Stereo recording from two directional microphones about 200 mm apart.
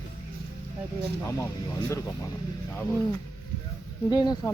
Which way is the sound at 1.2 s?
15° left (ahead or behind).